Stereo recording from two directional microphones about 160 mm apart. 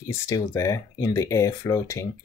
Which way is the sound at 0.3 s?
20° left (ahead or behind).